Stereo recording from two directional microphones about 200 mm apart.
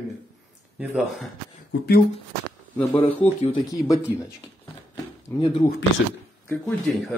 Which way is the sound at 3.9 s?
15° left (ahead or behind).